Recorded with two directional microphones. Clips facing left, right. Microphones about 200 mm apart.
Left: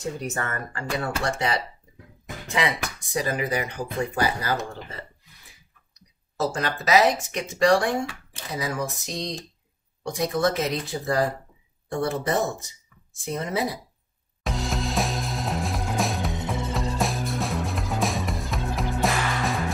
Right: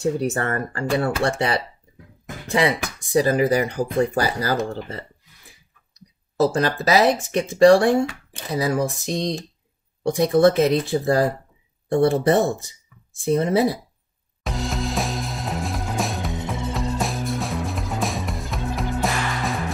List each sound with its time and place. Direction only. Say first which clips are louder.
0.4 s speech: right 6 dB; 35° right (ahead or behind)
6.4 s speech: right 7 dB; 35° right (ahead or behind)
14.4 s music: right 2 dB; centre (ahead or behind)